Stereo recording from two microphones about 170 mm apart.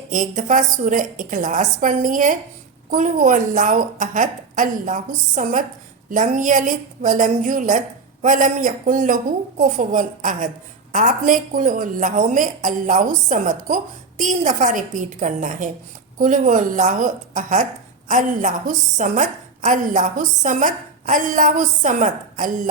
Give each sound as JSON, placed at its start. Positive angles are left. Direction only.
{"t": 0.1, "sound": "a woman's voice", "side_deg": -50}